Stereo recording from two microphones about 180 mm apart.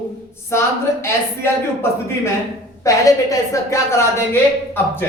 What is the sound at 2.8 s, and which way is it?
A man's voice, 20° left (ahead or behind).